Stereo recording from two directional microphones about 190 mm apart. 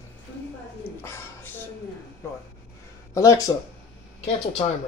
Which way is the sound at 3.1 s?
15° left (ahead or behind).